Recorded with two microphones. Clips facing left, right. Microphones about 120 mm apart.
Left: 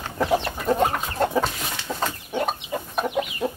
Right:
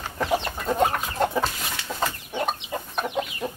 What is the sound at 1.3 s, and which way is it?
Chicken, centre (ahead or behind).